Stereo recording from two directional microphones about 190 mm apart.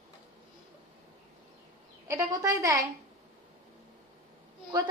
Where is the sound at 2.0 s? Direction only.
15° right (ahead or behind).